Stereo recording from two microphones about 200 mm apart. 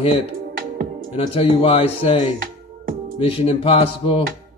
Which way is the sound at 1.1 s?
30° left (ahead or behind).